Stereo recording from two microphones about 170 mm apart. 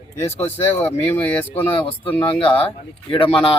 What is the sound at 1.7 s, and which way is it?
Speech, 30° left (ahead or behind).